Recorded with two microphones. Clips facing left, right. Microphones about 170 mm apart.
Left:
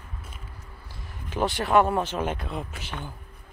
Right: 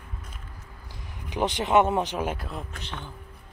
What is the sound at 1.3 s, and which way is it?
Speech, 20° right (ahead or behind).